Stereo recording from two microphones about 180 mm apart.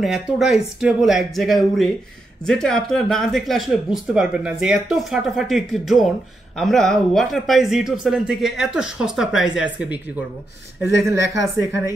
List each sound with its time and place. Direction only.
0.0 s speech: centre (ahead or behind)